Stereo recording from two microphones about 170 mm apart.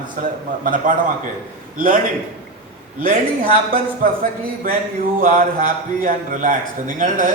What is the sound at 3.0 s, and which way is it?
A man's voice, 55° right (ahead or behind).